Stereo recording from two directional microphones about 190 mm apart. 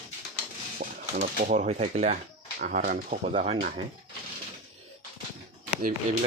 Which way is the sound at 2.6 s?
45° right (ahead or behind).